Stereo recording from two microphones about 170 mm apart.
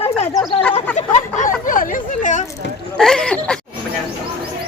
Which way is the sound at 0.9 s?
45° left (ahead or behind).